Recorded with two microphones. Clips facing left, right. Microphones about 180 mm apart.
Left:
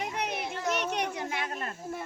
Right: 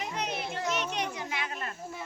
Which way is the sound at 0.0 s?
60° left (ahead or behind).